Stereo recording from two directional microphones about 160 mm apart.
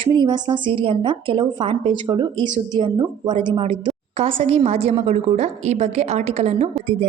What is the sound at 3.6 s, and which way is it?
A woman's voice, 40° right (ahead or behind).